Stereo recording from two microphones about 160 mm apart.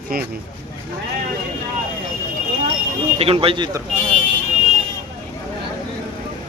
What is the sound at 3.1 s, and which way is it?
Speech, 35° right (ahead or behind).